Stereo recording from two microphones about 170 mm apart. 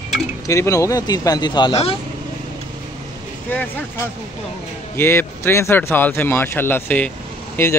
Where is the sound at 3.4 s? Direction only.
10° left (ahead or behind).